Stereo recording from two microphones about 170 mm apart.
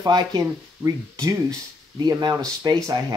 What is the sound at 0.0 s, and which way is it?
Speech, 25° right (ahead or behind).